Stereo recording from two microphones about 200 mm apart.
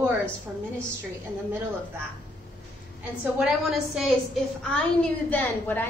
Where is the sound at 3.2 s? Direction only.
5° right (ahead or behind).